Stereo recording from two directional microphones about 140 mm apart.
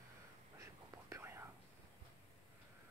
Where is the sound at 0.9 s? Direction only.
20° right (ahead or behind).